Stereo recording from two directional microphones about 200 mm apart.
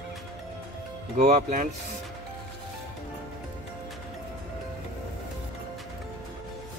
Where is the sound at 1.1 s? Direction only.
35° right (ahead or behind).